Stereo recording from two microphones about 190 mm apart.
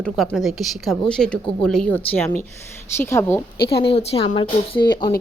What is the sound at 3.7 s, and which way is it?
A woman's voice, 30° left (ahead or behind).